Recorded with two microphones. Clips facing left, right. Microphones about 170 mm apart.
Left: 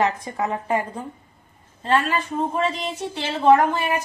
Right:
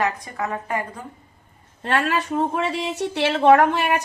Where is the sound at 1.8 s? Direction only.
75° right (ahead or behind).